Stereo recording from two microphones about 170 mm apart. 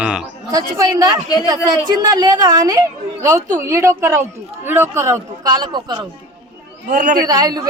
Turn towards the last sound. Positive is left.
turn(degrees=-20)  # may be behind; listen again after turning